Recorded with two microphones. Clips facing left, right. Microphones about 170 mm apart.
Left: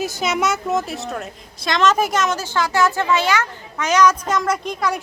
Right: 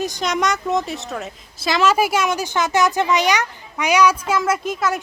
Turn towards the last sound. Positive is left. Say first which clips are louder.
# right 1 dB
turn(degrees=-5)  # may be behind; listen again after turning